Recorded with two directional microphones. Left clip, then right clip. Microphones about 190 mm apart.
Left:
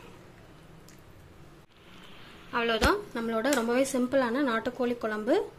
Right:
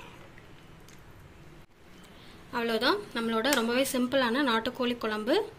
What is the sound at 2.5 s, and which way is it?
Speech, 10° right (ahead or behind).